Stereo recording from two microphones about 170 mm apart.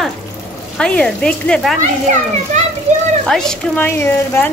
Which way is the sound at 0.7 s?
5° left (ahead or behind).